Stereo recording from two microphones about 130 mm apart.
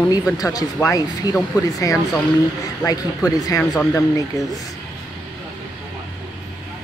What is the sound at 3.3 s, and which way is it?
Speech, 25° left (ahead or behind).